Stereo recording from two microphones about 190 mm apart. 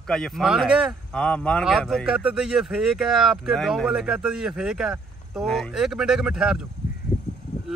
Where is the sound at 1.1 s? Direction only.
5° left (ahead or behind).